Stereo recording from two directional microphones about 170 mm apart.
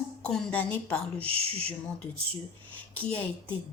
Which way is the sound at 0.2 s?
5° left (ahead or behind).